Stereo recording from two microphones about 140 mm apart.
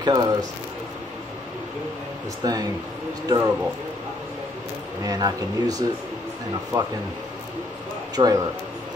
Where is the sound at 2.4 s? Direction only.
30° right (ahead or behind).